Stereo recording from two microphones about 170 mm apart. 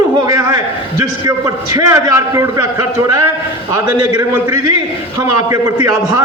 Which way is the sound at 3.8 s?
20° right (ahead or behind).